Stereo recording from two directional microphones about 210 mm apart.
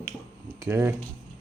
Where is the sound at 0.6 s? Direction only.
15° right (ahead or behind).